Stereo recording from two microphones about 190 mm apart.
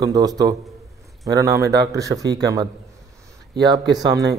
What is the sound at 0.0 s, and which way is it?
Speech, 20° right (ahead or behind).